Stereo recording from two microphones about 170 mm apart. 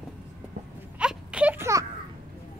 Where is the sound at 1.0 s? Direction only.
5° right (ahead or behind).